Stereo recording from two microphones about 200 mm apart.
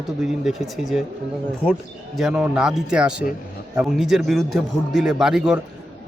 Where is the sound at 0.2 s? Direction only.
Centre (ahead or behind).